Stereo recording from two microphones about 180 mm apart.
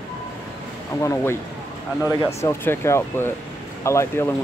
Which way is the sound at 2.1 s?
15° left (ahead or behind).